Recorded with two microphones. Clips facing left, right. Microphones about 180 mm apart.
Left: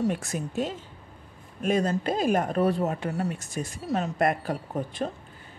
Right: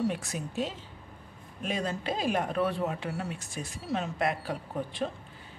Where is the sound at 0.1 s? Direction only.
45° left (ahead or behind).